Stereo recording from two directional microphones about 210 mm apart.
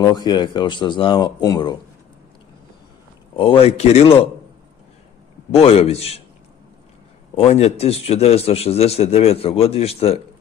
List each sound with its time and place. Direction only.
0.0 s a man's voice: 20° left (ahead or behind)
3.3 s a man's voice: 25° left (ahead or behind)
5.5 s a man's voice: 30° left (ahead or behind)
7.3 s a man's voice: 30° left (ahead or behind)